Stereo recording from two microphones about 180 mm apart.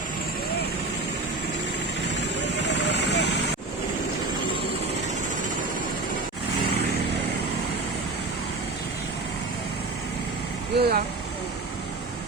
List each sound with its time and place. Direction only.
2.6 s vehicle: 70° left (ahead or behind)
10.8 s vehicle: 60° right (ahead or behind)